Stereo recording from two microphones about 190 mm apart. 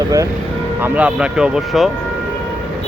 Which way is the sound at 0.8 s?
10° right (ahead or behind).